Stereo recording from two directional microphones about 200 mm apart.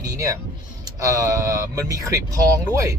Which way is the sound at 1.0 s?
15° right (ahead or behind).